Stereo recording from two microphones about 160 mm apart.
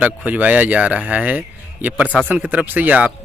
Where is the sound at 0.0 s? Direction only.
10° right (ahead or behind).